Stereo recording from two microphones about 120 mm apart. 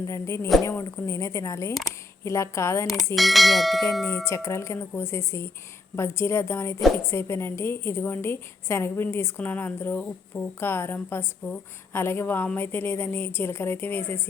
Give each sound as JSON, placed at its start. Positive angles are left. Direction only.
{"t": 0.0, "sound": "a woman's voice", "side_deg": 25}
{"t": 3.2, "sound": "bell", "side_deg": 0}
{"t": 4.3, "sound": "a woman's voice", "side_deg": 25}